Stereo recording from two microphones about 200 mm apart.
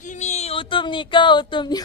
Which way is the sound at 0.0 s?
35° left (ahead or behind).